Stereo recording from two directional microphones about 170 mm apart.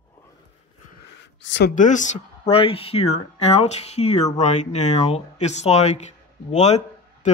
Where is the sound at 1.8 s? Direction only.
45° left (ahead or behind).